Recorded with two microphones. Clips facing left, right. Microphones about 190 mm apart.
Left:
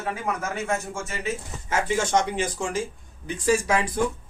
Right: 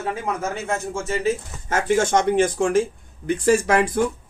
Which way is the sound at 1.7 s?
50° right (ahead or behind).